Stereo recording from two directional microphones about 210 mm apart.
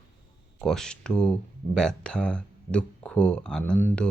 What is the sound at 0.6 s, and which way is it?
Speech, centre (ahead or behind).